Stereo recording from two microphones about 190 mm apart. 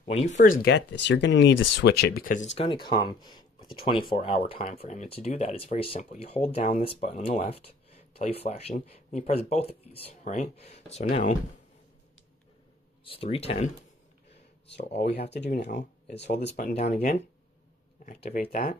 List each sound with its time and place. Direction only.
0.0 s speech: 35° left (ahead or behind)
13.0 s speech: 30° left (ahead or behind)
15.0 s speech: 60° left (ahead or behind)
16.4 s speech: 40° left (ahead or behind)
18.2 s speech: 55° left (ahead or behind)